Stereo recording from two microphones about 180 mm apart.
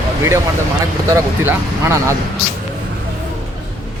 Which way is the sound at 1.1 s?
15° right (ahead or behind).